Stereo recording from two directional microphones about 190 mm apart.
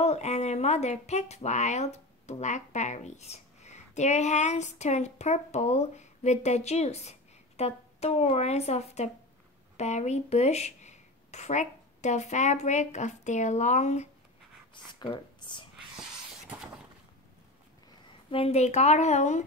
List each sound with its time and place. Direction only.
0.0 s speech: 35° left (ahead or behind)
14.7 s speech: 25° left (ahead or behind)
18.3 s speech: 30° left (ahead or behind)